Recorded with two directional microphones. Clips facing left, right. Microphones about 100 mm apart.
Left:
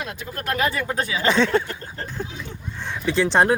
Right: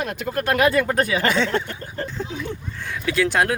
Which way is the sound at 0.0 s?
65° right (ahead or behind).